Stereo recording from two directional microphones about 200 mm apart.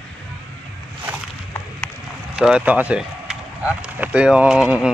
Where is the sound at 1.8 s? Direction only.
5° right (ahead or behind).